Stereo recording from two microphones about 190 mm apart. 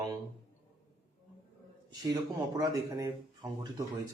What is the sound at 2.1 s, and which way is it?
A man's voice, 20° right (ahead or behind).